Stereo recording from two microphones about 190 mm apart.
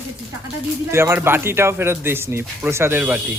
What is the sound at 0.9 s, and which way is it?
Speech, 15° right (ahead or behind).